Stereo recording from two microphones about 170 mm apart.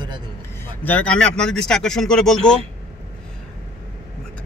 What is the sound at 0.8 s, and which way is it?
Speech, 10° left (ahead or behind).